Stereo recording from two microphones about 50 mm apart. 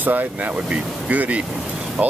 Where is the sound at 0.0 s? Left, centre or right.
Right.